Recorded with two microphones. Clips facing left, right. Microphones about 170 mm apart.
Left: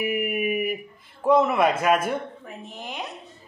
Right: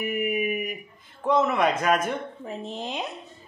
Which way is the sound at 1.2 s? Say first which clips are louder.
Left 3 dB; 10° left (ahead or behind).